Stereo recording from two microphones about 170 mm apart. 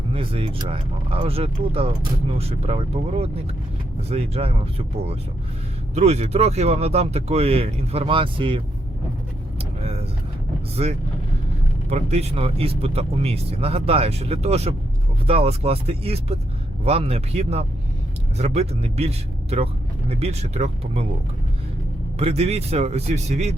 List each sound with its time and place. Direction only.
0.1 s speech: 30° right (ahead or behind)
9.6 s vehicle: 35° right (ahead or behind)
10.8 s speech: 40° right (ahead or behind)
22.2 s speech: 35° right (ahead or behind)